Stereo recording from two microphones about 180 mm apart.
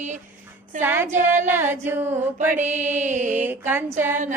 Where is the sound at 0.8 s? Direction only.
10° right (ahead or behind).